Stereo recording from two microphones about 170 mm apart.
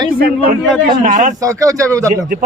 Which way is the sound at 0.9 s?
50° right (ahead or behind).